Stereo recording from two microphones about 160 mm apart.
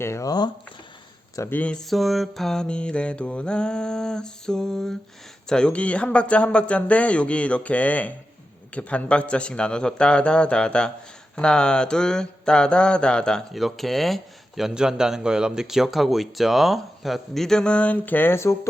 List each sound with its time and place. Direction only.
0.0 s speech: 20° left (ahead or behind)
1.4 s mantra: 10° left (ahead or behind)
5.5 s speech: 5° left (ahead or behind)
11.3 s mantra: 5° left (ahead or behind)